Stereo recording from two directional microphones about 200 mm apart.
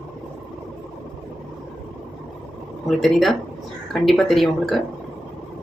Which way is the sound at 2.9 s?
Centre (ahead or behind).